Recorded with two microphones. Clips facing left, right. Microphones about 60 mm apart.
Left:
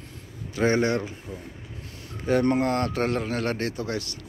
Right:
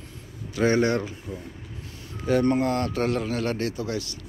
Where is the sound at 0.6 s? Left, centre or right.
Left.